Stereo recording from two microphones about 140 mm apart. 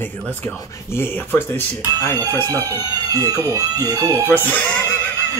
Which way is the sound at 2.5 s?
25° right (ahead or behind).